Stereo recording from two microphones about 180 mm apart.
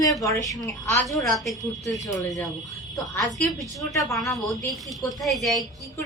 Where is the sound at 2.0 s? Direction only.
20° left (ahead or behind).